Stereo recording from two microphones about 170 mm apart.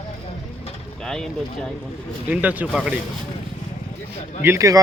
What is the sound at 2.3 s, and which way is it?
Speech, 10° right (ahead or behind).